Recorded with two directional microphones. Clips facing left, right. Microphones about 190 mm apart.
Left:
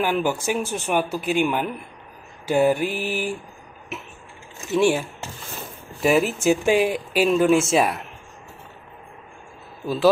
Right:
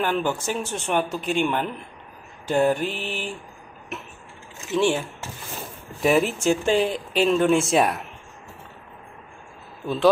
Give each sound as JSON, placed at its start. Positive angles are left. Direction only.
{"t": 0.0, "sound": "speech", "side_deg": 10}
{"t": 4.7, "sound": "speech", "side_deg": 10}